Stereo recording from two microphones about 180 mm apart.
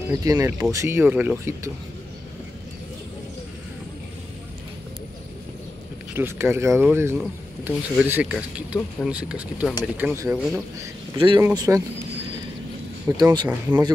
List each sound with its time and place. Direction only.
0.1 s speech: 20° right (ahead or behind)
6.1 s speech: 10° right (ahead or behind)
11.1 s speech: 25° right (ahead or behind)
13.2 s speech: 25° right (ahead or behind)
13.5 s speech: 10° right (ahead or behind)